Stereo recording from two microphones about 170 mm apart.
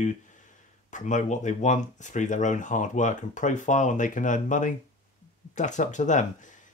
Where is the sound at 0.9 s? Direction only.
45° left (ahead or behind).